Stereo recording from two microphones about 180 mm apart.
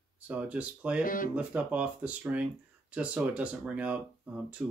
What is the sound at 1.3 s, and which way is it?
Speech, 5° right (ahead or behind).